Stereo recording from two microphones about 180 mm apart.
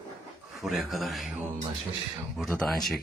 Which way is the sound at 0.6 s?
Centre (ahead or behind).